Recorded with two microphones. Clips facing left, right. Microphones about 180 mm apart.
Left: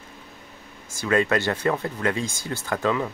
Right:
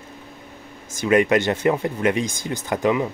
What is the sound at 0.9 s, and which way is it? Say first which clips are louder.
Speech: right 5 dB; 20° right (ahead or behind).